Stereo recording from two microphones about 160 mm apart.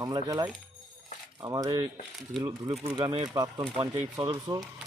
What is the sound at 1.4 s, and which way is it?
Speech, 25° right (ahead or behind).